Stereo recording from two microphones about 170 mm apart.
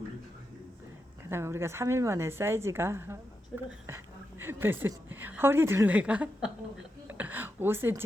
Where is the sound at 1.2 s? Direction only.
15° right (ahead or behind).